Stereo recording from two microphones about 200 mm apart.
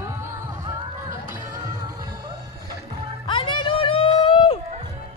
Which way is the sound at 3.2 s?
25° left (ahead or behind).